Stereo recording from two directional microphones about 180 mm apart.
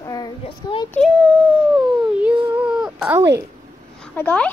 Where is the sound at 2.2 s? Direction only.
5° right (ahead or behind).